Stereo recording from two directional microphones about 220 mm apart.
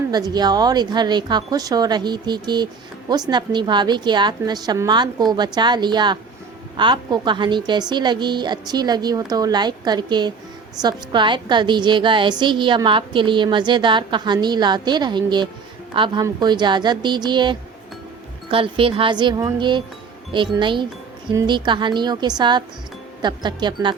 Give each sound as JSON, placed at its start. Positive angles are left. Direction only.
{"t": 0.1, "sound": "a woman's voice", "side_deg": -20}